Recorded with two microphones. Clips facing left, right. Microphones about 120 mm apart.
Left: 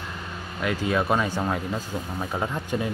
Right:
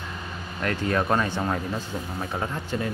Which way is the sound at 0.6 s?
5° left (ahead or behind).